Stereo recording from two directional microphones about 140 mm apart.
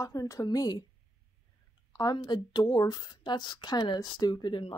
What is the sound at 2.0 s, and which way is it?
Speech, 30° left (ahead or behind).